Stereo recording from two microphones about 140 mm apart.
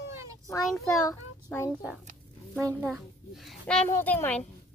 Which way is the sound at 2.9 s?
Centre (ahead or behind).